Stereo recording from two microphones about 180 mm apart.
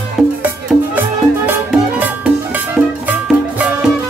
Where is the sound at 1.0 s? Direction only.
10° right (ahead or behind).